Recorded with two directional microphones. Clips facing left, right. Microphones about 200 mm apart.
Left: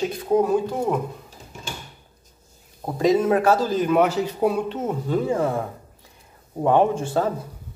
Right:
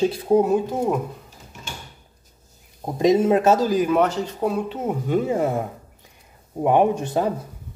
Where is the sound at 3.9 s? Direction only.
5° left (ahead or behind).